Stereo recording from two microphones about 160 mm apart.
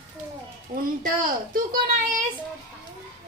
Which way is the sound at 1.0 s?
60° right (ahead or behind).